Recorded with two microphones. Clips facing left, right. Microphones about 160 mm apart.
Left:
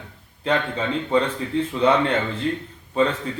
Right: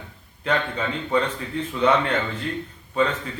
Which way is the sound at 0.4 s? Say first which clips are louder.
Left 2 dB; 30° left (ahead or behind).